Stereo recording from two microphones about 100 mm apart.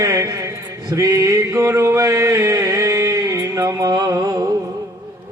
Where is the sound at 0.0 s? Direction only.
35° right (ahead or behind).